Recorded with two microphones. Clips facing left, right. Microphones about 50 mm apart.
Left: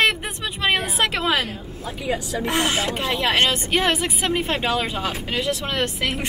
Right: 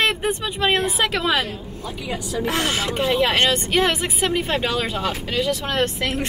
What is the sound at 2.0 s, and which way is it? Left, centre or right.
Speech, left.